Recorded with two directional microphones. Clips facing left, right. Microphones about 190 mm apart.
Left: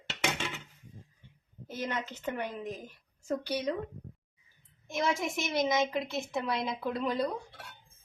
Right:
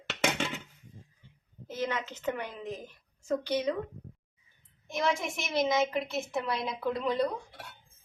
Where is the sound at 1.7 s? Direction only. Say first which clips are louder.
Right 3 dB; 10° left (ahead or behind).